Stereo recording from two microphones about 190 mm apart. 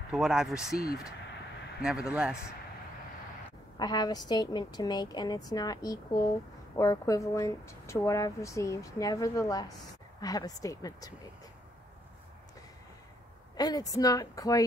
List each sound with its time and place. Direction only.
0.1 s speech: 5° right (ahead or behind)
1.8 s speech: 5° right (ahead or behind)
3.7 s a woman's voice: 20° left (ahead or behind)
13.6 s a woman's voice: 20° left (ahead or behind)